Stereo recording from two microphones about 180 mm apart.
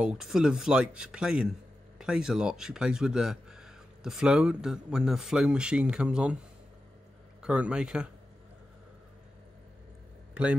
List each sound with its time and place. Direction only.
0.0 s speech: 5° right (ahead or behind)
7.4 s speech: 5° right (ahead or behind)